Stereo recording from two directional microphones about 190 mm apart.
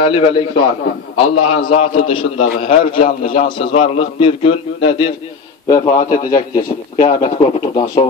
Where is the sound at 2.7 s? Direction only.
45° left (ahead or behind).